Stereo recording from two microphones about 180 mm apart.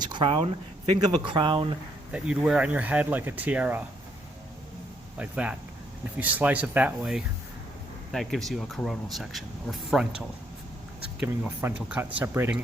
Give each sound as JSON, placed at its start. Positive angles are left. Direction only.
{"t": 0.0, "sound": "speech", "side_deg": -25}
{"t": 2.1, "sound": "speech", "side_deg": -5}
{"t": 5.1, "sound": "speech", "side_deg": -5}
{"t": 11.2, "sound": "speech", "side_deg": -5}